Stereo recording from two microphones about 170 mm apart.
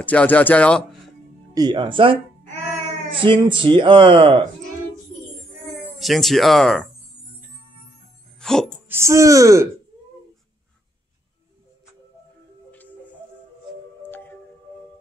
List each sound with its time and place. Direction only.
0.0 s speech: 10° left (ahead or behind)
1.5 s speech: 25° right (ahead or behind)
3.2 s speech: 30° right (ahead or behind)
5.9 s speech: centre (ahead or behind)
8.4 s music: 5° left (ahead or behind)
8.8 s speech: 15° right (ahead or behind)